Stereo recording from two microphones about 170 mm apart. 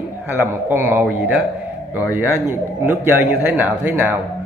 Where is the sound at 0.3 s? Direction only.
15° right (ahead or behind).